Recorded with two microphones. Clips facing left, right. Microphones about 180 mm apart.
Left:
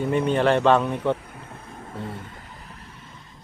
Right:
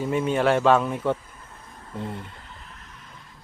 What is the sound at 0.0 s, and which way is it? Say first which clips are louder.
Speech: left 2 dB; 5° right (ahead or behind).